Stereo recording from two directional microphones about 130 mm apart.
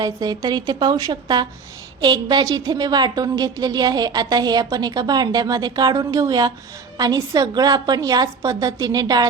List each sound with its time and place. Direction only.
0.0 s a woman's voice: 30° right (ahead or behind)